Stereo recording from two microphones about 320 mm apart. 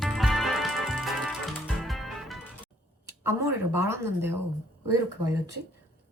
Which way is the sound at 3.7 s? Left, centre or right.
Centre.